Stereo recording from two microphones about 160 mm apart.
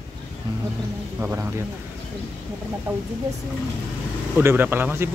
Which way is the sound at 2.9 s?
10° right (ahead or behind).